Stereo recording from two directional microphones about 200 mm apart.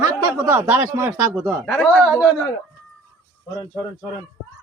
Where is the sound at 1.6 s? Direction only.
Centre (ahead or behind).